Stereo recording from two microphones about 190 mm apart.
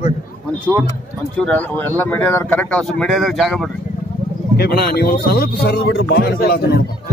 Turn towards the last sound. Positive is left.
turn(degrees=55)  # may be behind; listen again after turning